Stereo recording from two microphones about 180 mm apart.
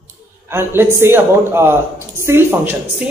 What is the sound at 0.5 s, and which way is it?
A man's voice, 10° right (ahead or behind).